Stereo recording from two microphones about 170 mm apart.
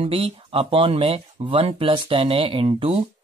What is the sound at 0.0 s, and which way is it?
Speech, 35° right (ahead or behind).